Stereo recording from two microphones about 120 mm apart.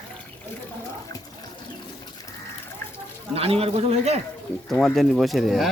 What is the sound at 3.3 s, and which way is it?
Speech, 55° right (ahead or behind).